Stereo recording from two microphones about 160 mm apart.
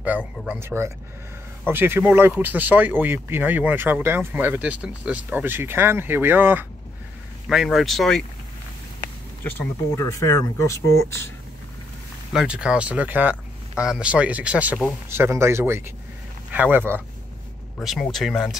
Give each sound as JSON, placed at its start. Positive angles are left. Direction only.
{"t": 0.0, "sound": "speech", "side_deg": -10}
{"t": 7.4, "sound": "speech", "side_deg": 0}
{"t": 9.4, "sound": "speech", "side_deg": 15}
{"t": 12.3, "sound": "speech", "side_deg": -5}
{"t": 17.7, "sound": "speech", "side_deg": 0}